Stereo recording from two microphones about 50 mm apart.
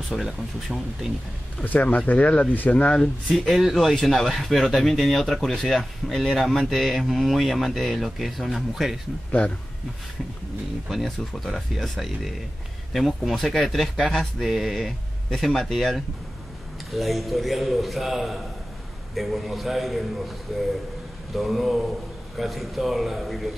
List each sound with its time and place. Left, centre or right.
0.1 s speech: centre
1.6 s speech: left
2.9 s speech: centre
10.9 s speech: centre